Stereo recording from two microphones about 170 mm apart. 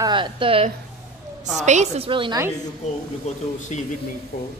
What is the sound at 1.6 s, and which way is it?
Speech, 40° right (ahead or behind).